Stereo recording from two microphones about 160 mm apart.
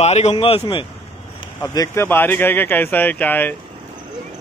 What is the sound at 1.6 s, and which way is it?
Speech, 15° left (ahead or behind).